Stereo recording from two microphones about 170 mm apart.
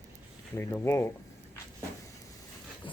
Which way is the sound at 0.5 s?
15° left (ahead or behind).